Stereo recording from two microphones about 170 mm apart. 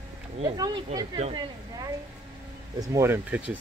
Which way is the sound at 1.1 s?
35° right (ahead or behind).